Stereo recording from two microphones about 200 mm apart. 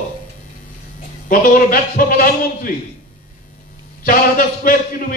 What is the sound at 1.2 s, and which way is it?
A man's voice, 45° left (ahead or behind).